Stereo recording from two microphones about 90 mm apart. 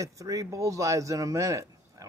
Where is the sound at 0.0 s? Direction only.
35° right (ahead or behind).